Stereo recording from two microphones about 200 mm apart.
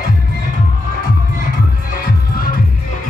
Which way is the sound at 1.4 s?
45° left (ahead or behind).